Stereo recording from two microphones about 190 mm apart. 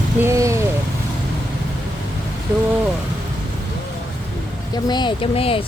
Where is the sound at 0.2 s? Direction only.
15° right (ahead or behind).